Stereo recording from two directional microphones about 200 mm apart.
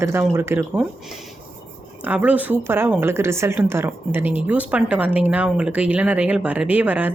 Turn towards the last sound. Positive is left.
turn(degrees=-10)  # may be behind; listen again after turning